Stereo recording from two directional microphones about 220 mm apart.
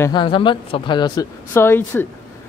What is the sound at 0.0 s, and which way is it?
Speech, 20° left (ahead or behind).